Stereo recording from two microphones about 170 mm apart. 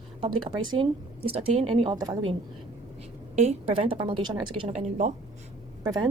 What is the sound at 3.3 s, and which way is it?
A woman's voice, 40° right (ahead or behind).